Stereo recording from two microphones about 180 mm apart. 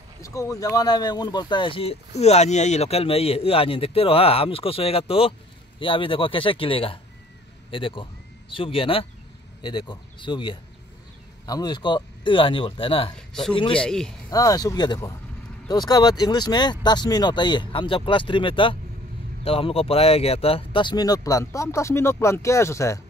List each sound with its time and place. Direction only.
0.2 s speech: 15° left (ahead or behind)
13.3 s speech: 5° left (ahead or behind)
14.3 s speech: 20° left (ahead or behind)